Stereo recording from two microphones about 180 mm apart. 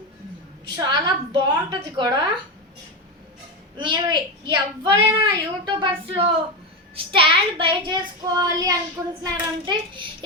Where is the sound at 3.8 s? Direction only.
25° right (ahead or behind).